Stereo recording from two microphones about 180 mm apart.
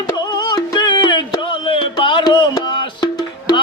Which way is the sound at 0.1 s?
20° left (ahead or behind).